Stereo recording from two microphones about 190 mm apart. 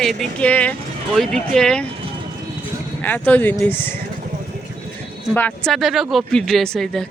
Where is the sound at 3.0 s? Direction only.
10° left (ahead or behind).